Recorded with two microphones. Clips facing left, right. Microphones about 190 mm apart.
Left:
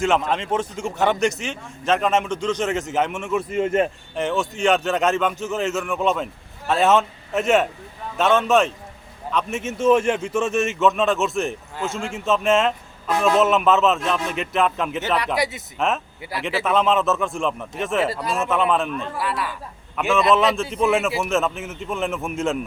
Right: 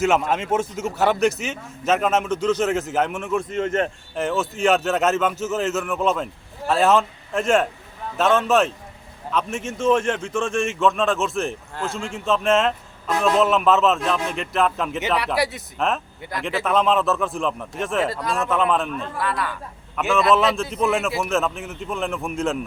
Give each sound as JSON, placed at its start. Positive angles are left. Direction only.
{"t": 0.0, "sound": "a man's voice", "side_deg": -5}
{"t": 3.5, "sound": "speech", "side_deg": 10}
{"t": 4.1, "sound": "a man's voice", "side_deg": 0}